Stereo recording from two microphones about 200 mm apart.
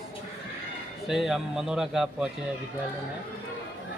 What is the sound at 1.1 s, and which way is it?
A man's voice, centre (ahead or behind).